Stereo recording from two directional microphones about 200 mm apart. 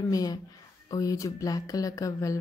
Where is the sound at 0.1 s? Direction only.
20° left (ahead or behind).